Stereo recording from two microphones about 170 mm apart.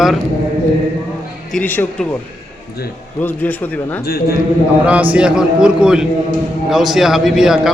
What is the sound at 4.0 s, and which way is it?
Speech, 65° left (ahead or behind).